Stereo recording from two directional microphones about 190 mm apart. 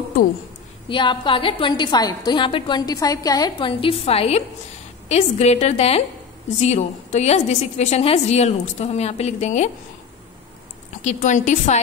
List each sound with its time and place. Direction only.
0.8 s a woman's voice: 25° left (ahead or behind)
11.0 s a woman's voice: 40° left (ahead or behind)